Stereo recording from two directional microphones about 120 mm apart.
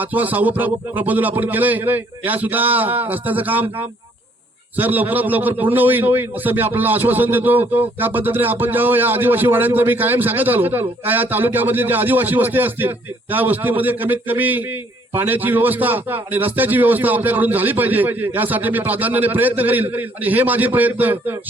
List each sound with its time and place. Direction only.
0.0 s a man's voice: 15° right (ahead or behind)